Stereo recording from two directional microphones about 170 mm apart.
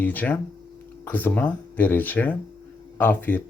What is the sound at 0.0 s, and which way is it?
Speech, 10° left (ahead or behind).